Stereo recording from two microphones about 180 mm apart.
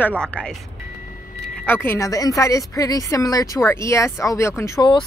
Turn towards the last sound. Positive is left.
turn(degrees=20)  # may be behind; listen again after turning